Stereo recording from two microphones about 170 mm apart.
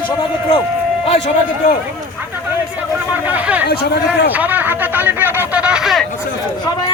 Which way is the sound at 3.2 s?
10° right (ahead or behind).